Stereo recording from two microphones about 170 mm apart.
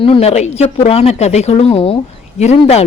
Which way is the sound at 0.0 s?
35° left (ahead or behind).